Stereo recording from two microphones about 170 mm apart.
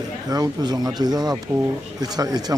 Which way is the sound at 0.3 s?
25° right (ahead or behind).